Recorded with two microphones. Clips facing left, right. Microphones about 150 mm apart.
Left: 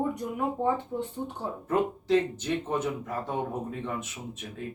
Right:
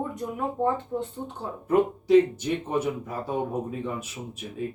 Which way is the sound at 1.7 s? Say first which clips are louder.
Right 5 dB; 10° right (ahead or behind).